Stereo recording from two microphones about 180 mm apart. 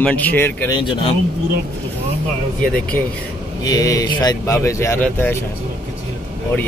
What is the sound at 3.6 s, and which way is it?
Speech, 20° left (ahead or behind).